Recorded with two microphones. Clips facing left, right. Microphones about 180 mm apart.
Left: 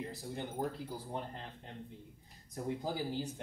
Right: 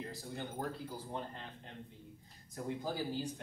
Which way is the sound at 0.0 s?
20° left (ahead or behind).